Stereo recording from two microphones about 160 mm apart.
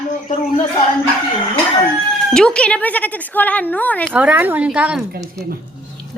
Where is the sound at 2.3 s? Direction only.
5° left (ahead or behind).